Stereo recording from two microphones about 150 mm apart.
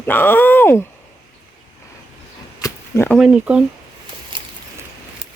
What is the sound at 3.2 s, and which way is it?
Speech, 5° right (ahead or behind).